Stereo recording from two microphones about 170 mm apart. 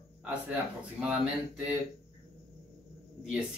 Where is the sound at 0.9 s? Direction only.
5° right (ahead or behind).